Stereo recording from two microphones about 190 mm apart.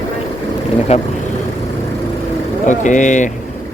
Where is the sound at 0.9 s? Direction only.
35° left (ahead or behind).